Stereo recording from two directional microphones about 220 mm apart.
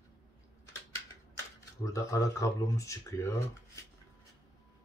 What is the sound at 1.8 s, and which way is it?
Speech, 15° left (ahead or behind).